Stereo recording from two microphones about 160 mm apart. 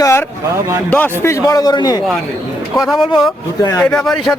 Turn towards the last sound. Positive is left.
turn(degrees=0)  # may be behind; listen again after turning